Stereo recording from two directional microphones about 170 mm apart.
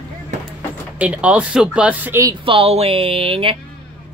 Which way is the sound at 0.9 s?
10° right (ahead or behind).